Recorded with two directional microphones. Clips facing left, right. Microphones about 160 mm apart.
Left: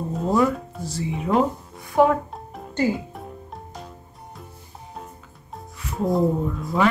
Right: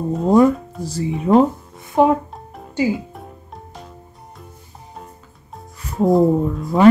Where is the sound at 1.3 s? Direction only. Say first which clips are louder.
Right 7 dB; 30° right (ahead or behind).